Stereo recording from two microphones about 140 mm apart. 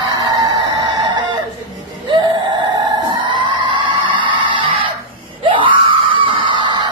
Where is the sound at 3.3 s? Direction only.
35° right (ahead or behind).